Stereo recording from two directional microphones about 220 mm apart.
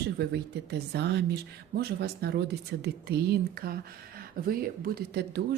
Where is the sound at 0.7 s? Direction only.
50° right (ahead or behind).